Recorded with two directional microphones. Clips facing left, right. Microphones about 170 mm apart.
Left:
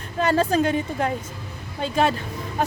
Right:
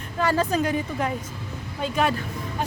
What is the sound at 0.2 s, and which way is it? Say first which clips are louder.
A woman's voice: left 3 dB; 25° left (ahead or behind).